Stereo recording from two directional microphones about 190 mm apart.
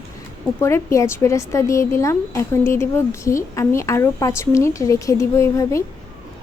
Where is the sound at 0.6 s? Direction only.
15° left (ahead or behind).